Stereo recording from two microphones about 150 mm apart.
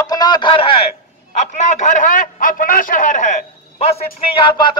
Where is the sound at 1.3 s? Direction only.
50° left (ahead or behind).